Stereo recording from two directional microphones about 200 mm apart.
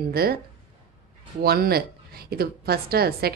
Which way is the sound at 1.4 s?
50° right (ahead or behind).